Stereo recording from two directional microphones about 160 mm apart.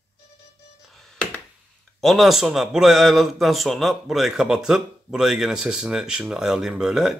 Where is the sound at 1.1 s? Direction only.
5° left (ahead or behind).